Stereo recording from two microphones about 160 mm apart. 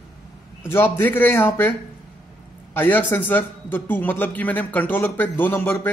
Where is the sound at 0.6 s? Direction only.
15° left (ahead or behind).